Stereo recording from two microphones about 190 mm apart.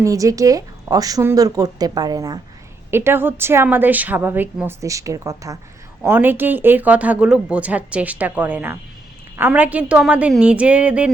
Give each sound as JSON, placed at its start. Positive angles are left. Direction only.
{"t": 0.0, "sound": "speech", "side_deg": -15}